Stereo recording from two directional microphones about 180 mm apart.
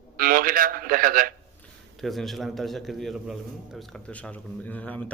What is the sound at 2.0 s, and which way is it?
A man's voice, centre (ahead or behind).